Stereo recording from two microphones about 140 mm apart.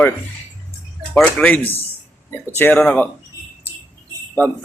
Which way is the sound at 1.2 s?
5° left (ahead or behind).